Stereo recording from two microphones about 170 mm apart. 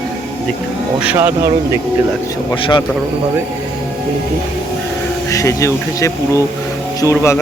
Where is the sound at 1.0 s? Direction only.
10° right (ahead or behind).